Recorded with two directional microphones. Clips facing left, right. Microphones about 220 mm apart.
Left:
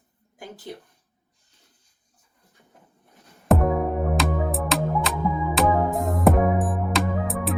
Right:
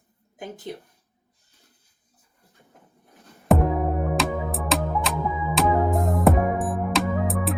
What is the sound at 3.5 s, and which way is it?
Music, centre (ahead or behind).